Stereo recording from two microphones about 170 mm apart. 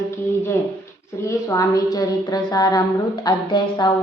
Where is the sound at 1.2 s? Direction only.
20° left (ahead or behind).